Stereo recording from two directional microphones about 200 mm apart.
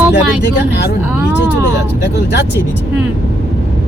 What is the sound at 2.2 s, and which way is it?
Speech, 60° left (ahead or behind).